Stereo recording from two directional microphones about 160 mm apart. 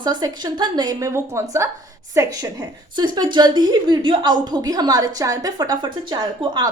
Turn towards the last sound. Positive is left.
turn(degrees=-25)  # may be behind; listen again after turning